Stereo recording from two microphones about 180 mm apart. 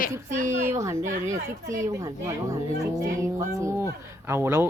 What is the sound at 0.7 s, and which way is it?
Speech, 15° right (ahead or behind).